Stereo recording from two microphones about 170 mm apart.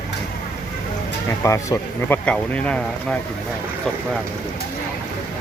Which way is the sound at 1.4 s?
20° left (ahead or behind).